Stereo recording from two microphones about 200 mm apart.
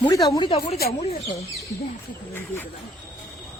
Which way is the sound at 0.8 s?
50° left (ahead or behind).